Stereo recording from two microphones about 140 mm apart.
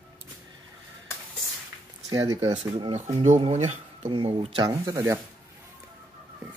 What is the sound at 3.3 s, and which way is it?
Speech, 50° right (ahead or behind).